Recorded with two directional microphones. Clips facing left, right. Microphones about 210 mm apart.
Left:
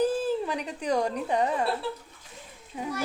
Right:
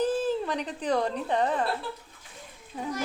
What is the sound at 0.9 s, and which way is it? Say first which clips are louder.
Speech: left 1 dB; 10° left (ahead or behind).